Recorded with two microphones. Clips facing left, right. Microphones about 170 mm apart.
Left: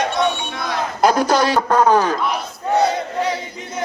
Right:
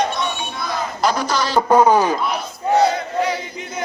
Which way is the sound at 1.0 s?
50° left (ahead or behind).